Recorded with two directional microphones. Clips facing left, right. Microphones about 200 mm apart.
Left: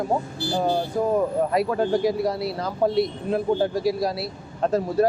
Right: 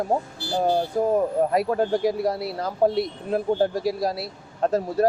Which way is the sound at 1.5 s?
45° right (ahead or behind).